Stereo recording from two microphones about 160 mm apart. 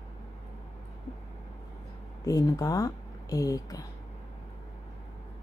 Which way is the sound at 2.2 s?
20° left (ahead or behind).